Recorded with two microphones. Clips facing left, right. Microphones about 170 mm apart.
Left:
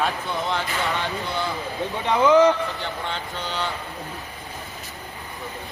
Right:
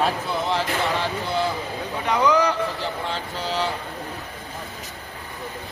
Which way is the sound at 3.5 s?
35° right (ahead or behind).